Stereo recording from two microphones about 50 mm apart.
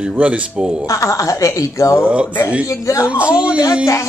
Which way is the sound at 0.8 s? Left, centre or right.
Left.